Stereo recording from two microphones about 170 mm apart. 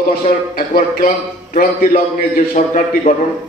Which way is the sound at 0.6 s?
55° left (ahead or behind).